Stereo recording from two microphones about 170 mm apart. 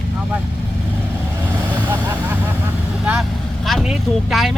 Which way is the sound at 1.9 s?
10° right (ahead or behind).